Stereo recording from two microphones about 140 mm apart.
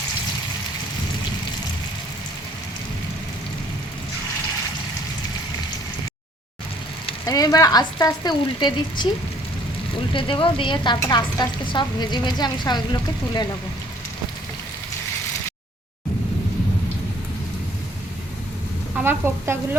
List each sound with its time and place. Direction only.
7.3 s speech: 25° left (ahead or behind)
10.1 s a woman's voice: 40° left (ahead or behind)
19.0 s speech: 15° right (ahead or behind)